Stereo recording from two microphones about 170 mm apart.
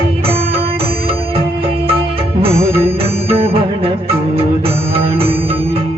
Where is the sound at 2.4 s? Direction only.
35° right (ahead or behind).